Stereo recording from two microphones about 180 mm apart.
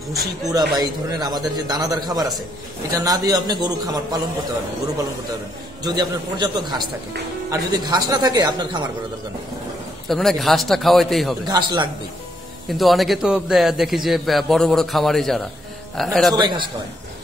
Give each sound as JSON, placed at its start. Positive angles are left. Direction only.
{"t": 0.5, "sound": "a man's voice", "side_deg": -20}
{"t": 5.9, "sound": "a man's voice", "side_deg": -25}
{"t": 10.0, "sound": "a man's voice", "side_deg": 0}
{"t": 11.4, "sound": "a man's voice", "side_deg": -25}
{"t": 12.6, "sound": "a man's voice", "side_deg": 0}
{"t": 16.3, "sound": "a man's voice", "side_deg": -25}